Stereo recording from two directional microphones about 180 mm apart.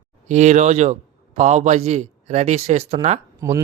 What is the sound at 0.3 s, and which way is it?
A man's voice, 40° right (ahead or behind).